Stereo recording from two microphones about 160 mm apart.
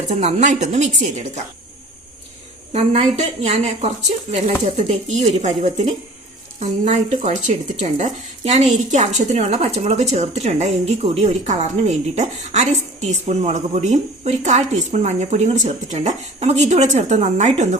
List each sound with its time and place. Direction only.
0.2 s speech: 40° right (ahead or behind)
2.7 s a woman's voice: 40° right (ahead or behind)